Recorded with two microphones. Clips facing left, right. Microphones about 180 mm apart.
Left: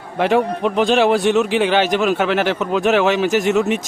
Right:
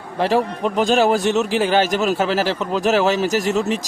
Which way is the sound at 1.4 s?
Centre (ahead or behind).